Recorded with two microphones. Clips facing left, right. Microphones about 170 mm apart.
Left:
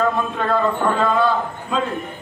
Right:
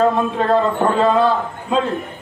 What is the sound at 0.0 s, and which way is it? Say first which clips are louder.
A man's voice: right 4 dB; 35° right (ahead or behind).